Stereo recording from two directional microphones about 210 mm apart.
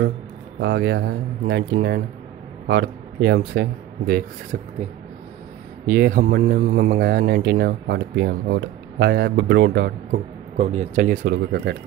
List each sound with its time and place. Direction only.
0.6 s speech: 55° right (ahead or behind)
5.9 s speech: 45° right (ahead or behind)